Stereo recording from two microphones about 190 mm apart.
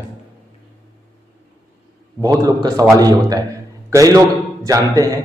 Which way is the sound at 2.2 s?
20° right (ahead or behind).